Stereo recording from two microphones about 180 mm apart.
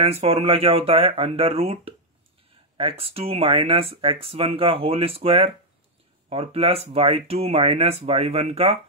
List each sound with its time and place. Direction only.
0.0 s speech: 35° right (ahead or behind)